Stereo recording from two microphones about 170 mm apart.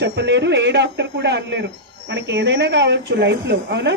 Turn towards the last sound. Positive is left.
turn(degrees=-90)